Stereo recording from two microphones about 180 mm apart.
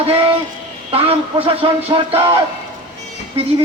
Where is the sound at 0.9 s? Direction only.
30° right (ahead or behind).